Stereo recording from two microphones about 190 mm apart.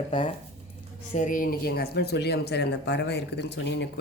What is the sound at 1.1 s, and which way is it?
Speech, 45° left (ahead or behind).